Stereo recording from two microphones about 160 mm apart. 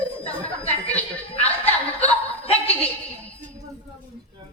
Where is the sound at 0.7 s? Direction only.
10° left (ahead or behind).